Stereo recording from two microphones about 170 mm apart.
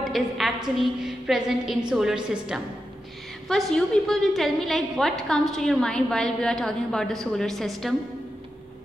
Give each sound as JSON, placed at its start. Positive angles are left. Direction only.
{"t": 0.0, "sound": "a woman's voice", "side_deg": 0}